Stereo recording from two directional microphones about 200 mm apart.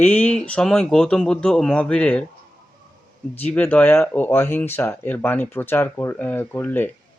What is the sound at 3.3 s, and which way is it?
Speech, 10° left (ahead or behind).